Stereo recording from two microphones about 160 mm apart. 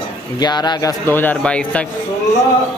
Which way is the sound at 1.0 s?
10° left (ahead or behind).